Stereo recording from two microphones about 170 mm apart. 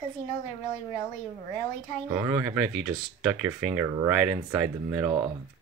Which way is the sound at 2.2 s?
10° right (ahead or behind).